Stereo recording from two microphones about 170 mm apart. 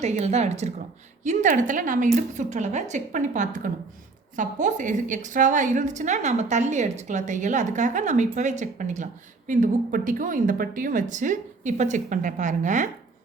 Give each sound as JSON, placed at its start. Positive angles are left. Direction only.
{"t": 0.0, "sound": "a woman's voice", "side_deg": -40}